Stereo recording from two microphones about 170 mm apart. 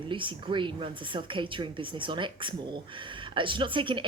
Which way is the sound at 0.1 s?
30° right (ahead or behind).